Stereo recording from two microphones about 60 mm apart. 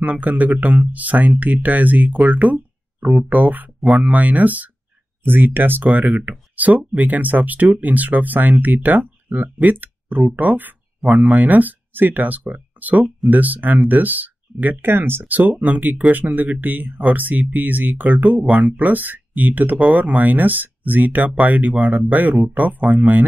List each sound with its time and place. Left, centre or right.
0.0 s speech: right